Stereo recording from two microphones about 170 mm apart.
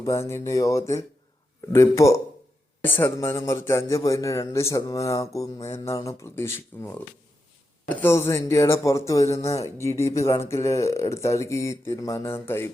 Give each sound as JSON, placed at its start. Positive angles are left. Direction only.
{"t": 0.0, "sound": "speech", "side_deg": 15}